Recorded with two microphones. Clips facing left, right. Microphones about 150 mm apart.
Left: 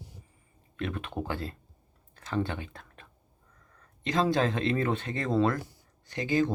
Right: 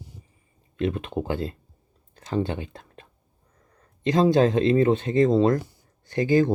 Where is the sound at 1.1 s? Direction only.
20° right (ahead or behind).